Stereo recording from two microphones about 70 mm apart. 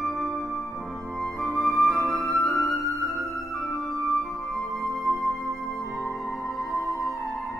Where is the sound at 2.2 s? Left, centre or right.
Left.